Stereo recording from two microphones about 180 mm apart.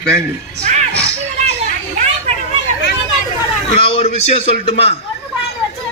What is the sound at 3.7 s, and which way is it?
A man's voice, 35° left (ahead or behind).